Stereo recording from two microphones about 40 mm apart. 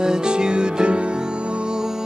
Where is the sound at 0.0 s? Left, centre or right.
Centre.